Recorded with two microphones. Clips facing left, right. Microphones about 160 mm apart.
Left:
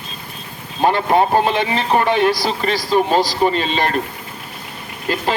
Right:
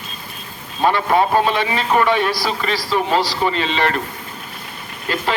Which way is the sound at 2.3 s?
45° left (ahead or behind).